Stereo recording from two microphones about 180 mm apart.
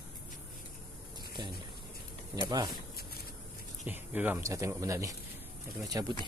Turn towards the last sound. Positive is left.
turn(degrees=-20)  # may be behind; listen again after turning